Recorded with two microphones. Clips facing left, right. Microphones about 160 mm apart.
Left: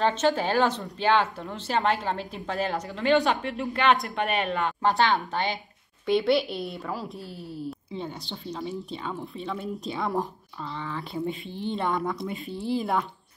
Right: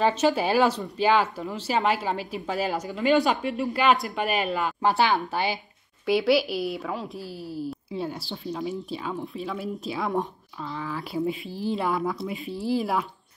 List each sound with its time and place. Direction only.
0.0 s a woman's voice: 10° right (ahead or behind)